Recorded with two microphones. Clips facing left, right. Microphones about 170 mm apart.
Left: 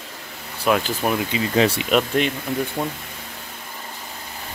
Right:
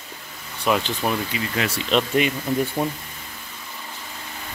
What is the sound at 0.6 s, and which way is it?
Speech, 5° left (ahead or behind).